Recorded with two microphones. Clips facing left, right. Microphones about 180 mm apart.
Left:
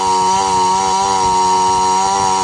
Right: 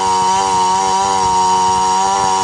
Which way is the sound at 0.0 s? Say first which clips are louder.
Even; 5° left (ahead or behind).